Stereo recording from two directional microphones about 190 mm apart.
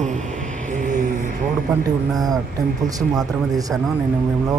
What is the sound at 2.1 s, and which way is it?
Speech, 20° right (ahead or behind).